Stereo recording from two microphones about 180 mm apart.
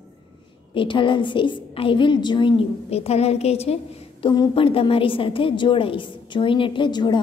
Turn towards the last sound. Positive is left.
turn(degrees=25)  # may be behind; listen again after turning